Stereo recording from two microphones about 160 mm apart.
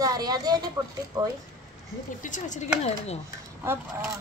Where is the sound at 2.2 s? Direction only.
50° left (ahead or behind).